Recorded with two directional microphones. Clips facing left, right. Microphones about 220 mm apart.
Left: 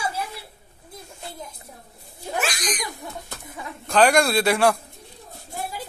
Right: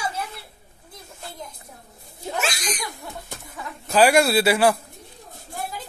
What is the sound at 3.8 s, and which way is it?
Speech, 5° right (ahead or behind).